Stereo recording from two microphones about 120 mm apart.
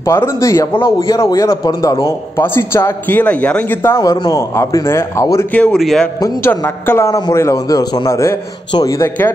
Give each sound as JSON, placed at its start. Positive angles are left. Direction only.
{"t": 0.0, "sound": "a man's voice", "side_deg": 25}
{"t": 3.9, "sound": "a man's voice", "side_deg": 30}
{"t": 5.5, "sound": "a man's voice", "side_deg": 10}
{"t": 6.2, "sound": "a man's voice", "side_deg": 20}